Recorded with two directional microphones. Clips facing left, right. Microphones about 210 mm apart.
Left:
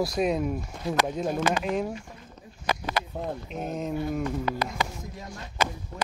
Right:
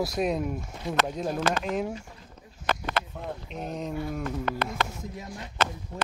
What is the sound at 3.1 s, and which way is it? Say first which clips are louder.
Speech: left 4 dB; 35° left (ahead or behind).